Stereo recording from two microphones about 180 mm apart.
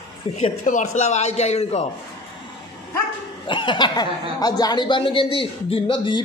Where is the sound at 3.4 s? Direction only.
25° left (ahead or behind).